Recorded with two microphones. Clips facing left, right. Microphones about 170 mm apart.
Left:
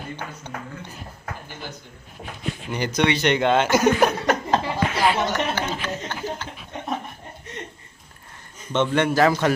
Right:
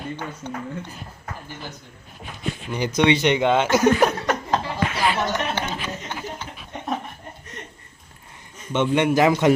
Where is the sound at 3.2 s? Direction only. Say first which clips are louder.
Right 1 dB; 5° right (ahead or behind).